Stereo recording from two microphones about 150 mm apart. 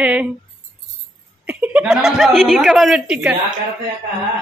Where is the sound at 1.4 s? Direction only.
10° right (ahead or behind).